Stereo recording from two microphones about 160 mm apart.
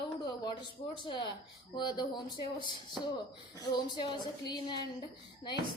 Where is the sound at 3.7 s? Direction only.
25° left (ahead or behind).